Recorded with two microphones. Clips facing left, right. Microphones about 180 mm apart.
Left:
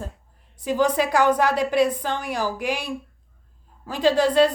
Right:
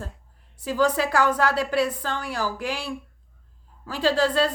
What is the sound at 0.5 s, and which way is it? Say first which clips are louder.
A woman's voice: left 2 dB; 20° left (ahead or behind).